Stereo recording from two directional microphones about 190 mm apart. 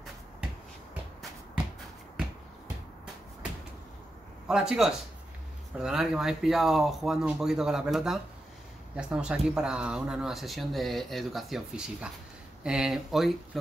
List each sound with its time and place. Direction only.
4.5 s speech: 5° right (ahead or behind)